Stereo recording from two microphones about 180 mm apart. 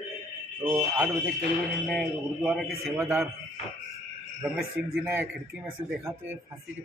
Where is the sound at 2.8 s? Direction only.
10° right (ahead or behind).